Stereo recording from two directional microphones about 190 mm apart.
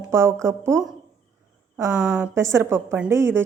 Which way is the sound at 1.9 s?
5° right (ahead or behind).